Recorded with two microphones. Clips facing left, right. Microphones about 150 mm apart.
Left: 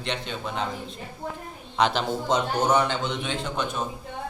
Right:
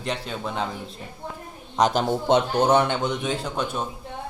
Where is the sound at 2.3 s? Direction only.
60° right (ahead or behind).